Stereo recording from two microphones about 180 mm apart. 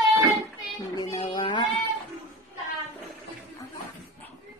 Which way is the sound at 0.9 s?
20° left (ahead or behind).